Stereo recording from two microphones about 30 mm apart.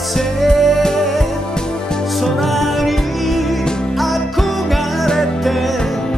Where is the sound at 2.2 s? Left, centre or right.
Centre.